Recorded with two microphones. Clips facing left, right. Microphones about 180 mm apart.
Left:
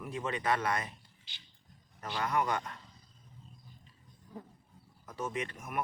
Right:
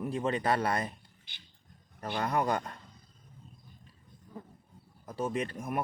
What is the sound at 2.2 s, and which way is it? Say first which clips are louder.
Speech: right 2 dB; 35° right (ahead or behind).